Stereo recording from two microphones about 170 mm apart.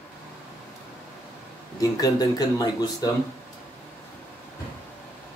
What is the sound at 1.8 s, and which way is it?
Speech, 20° left (ahead or behind).